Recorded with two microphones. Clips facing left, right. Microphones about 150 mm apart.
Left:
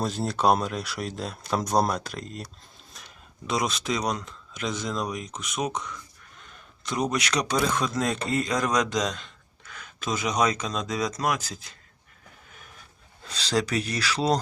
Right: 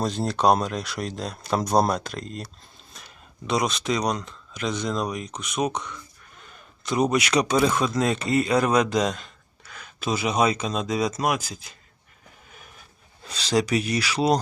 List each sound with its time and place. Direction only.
0.0 s speech: 5° left (ahead or behind)
9.1 s gasp: 40° right (ahead or behind)
10.2 s speech: 10° right (ahead or behind)
13.2 s speech: 15° right (ahead or behind)